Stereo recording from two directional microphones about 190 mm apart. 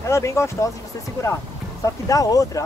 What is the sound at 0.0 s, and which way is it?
Speech, 15° left (ahead or behind).